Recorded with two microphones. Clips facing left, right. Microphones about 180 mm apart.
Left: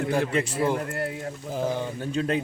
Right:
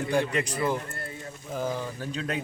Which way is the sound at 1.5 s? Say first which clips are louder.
Left 3 dB; 30° left (ahead or behind).